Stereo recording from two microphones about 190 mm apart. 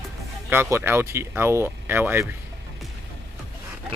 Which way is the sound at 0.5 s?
10° right (ahead or behind).